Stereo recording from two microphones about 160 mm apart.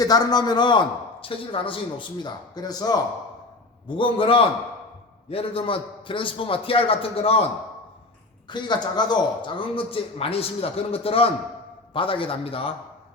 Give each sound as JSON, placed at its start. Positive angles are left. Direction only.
{"t": 0.0, "sound": "a man's voice", "side_deg": 25}
{"t": 8.4, "sound": "a man's voice", "side_deg": 30}